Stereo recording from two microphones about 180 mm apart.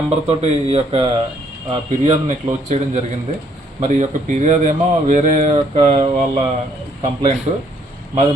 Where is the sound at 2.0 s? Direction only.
40° right (ahead or behind).